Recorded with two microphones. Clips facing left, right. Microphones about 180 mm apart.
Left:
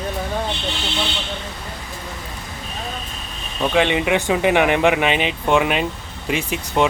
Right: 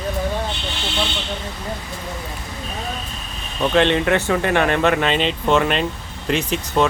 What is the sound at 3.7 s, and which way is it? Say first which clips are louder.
Speech: right 1 dB; 10° left (ahead or behind).